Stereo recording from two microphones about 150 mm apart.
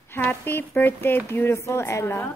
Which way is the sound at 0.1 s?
15° left (ahead or behind).